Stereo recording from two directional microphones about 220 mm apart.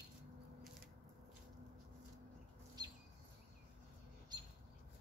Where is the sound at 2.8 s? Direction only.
20° right (ahead or behind).